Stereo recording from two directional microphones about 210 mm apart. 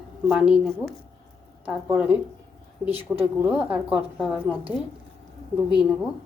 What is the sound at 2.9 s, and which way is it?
Speech, 25° right (ahead or behind).